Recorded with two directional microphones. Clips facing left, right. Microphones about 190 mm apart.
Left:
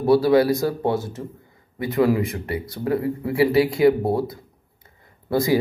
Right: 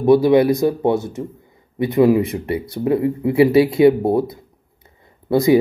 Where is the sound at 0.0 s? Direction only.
15° right (ahead or behind).